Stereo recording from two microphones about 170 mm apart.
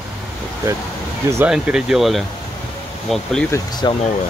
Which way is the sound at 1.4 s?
5° right (ahead or behind).